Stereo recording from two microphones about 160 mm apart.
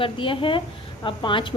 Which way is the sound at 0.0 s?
30° left (ahead or behind).